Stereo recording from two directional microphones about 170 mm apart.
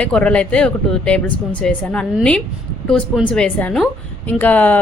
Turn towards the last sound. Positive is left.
turn(degrees=10)  # may be behind; listen again after turning